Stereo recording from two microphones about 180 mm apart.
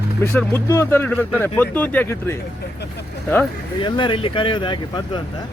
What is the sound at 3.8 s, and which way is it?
Speech, 25° left (ahead or behind).